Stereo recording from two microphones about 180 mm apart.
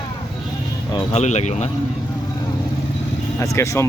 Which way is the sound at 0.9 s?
35° left (ahead or behind).